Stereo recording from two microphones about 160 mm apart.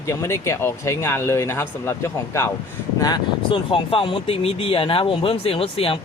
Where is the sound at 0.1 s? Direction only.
15° left (ahead or behind).